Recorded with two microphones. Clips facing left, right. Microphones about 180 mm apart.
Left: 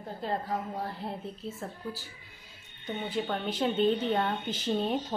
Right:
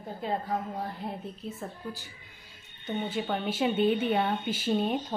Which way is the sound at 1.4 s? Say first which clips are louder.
Right 1 dB; 20° right (ahead or behind).